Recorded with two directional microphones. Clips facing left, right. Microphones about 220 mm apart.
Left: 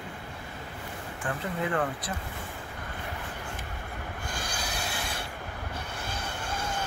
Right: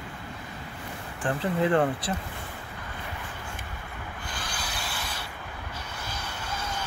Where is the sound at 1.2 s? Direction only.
30° right (ahead or behind).